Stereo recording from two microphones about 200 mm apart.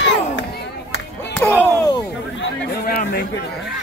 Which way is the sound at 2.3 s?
50° left (ahead or behind).